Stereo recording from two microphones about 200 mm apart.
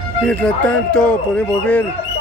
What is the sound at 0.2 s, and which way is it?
Speech, 5° left (ahead or behind).